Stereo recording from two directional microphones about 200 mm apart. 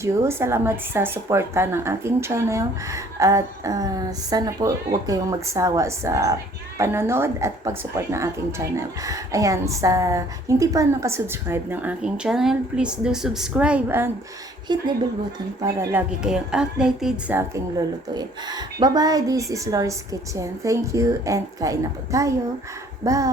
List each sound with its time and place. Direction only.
0.0 s speech: 15° right (ahead or behind)
14.7 s a woman's voice: 20° right (ahead or behind)